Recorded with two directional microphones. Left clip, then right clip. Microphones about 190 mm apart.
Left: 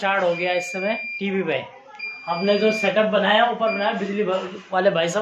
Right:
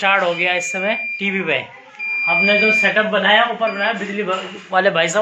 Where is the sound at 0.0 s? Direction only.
10° right (ahead or behind).